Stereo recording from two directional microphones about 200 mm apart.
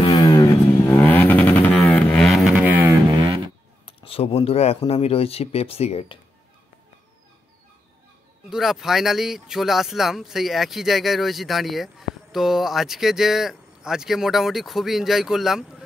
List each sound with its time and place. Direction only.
0.1 s vehicle: 15° left (ahead or behind); by 3.2 s 10° right (ahead or behind)
3.8 s speech: 30° left (ahead or behind)
8.5 s speech: centre (ahead or behind)